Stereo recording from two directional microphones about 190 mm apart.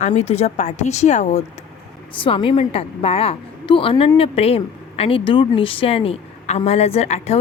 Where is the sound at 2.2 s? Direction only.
25° left (ahead or behind).